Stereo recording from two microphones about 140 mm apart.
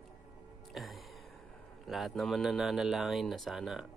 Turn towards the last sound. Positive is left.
turn(degrees=0)  # may be behind; listen again after turning